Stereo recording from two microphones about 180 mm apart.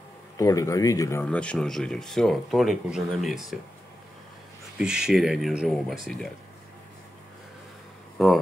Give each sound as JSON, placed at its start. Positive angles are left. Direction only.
{"t": 0.4, "sound": "speech", "side_deg": 20}
{"t": 4.7, "sound": "speech", "side_deg": -5}
{"t": 8.2, "sound": "speech", "side_deg": 0}